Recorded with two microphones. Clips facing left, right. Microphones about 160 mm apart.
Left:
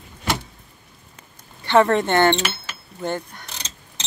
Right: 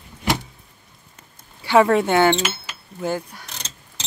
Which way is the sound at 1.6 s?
10° right (ahead or behind).